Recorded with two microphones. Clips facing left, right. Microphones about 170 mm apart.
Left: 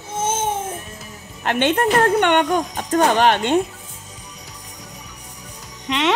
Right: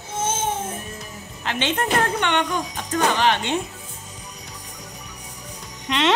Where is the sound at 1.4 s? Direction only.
55° left (ahead or behind).